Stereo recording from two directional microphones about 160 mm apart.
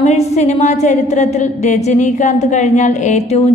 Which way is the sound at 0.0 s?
45° left (ahead or behind).